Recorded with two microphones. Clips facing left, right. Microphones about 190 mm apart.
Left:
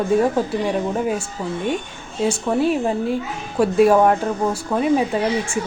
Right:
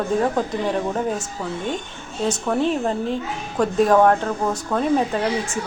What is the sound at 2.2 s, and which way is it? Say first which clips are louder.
Speech: left 2 dB; 10° left (ahead or behind).